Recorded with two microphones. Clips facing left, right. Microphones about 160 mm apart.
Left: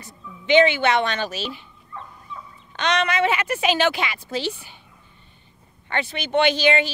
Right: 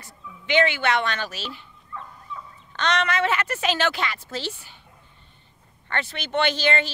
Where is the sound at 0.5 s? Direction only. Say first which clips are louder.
Left 5 dB; 20° left (ahead or behind).